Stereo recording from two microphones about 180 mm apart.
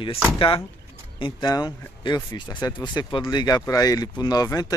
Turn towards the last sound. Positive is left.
turn(degrees=20)  # may be behind; listen again after turning